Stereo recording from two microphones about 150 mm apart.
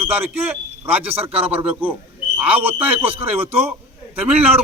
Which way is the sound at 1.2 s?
40° right (ahead or behind).